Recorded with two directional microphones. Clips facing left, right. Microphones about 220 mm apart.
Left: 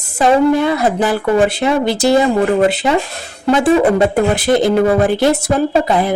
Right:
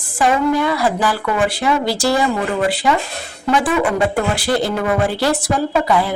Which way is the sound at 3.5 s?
25° left (ahead or behind).